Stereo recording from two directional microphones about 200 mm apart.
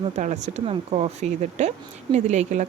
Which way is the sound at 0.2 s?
35° right (ahead or behind).